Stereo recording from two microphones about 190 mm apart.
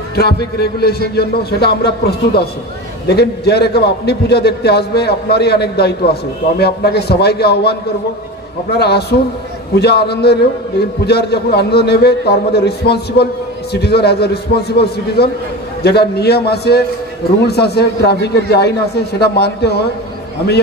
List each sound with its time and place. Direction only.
0.1 s a man's voice: 55° left (ahead or behind)